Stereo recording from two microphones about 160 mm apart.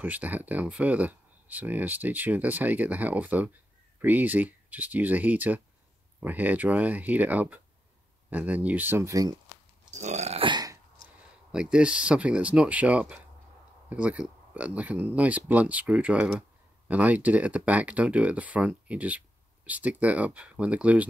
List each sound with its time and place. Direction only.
0.0 s speech: 10° right (ahead or behind)
9.8 s burping: 45° right (ahead or behind); by 10.8 s 25° right (ahead or behind)
11.5 s speech: 5° right (ahead or behind)